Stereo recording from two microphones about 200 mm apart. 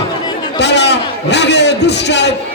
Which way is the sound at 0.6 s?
60° left (ahead or behind).